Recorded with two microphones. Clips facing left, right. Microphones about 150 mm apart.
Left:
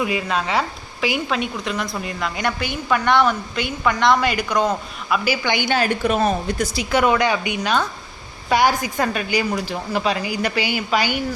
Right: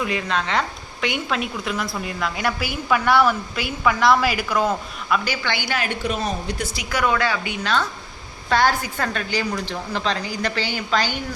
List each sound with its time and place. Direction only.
0.0 s a woman's voice: 10° left (ahead or behind)
5.7 s a woman's voice: 35° left (ahead or behind)
6.0 s speech: 55° left (ahead or behind)
6.7 s speech: 20° left (ahead or behind)